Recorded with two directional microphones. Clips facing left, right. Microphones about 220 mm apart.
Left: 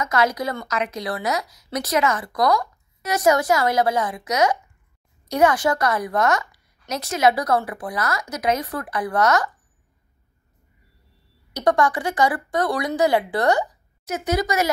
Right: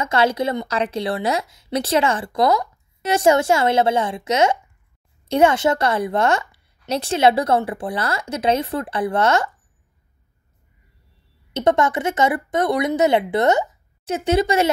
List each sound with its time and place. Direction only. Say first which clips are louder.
0.0 s a woman's voice: right 3 dB; 30° right (ahead or behind)
11.5 s a woman's voice: right 2 dB; 25° right (ahead or behind)